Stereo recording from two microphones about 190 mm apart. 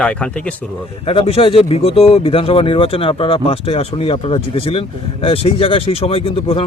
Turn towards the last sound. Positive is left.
turn(degrees=30)  # may be behind; listen again after turning